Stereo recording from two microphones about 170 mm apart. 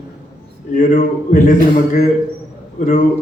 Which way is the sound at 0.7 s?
50° left (ahead or behind).